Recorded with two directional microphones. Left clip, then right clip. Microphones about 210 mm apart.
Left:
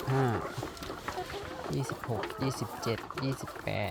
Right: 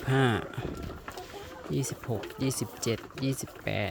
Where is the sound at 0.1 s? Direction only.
45° right (ahead or behind).